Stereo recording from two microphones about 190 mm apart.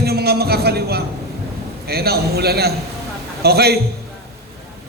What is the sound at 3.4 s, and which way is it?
Speech, 55° right (ahead or behind).